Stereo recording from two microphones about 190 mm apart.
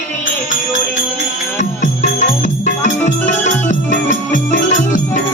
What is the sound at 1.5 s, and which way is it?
Music, 40° left (ahead or behind).